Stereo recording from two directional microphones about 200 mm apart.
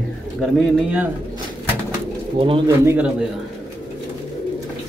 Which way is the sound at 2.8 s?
10° right (ahead or behind).